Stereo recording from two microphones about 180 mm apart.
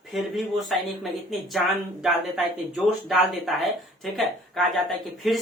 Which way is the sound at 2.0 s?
Centre (ahead or behind).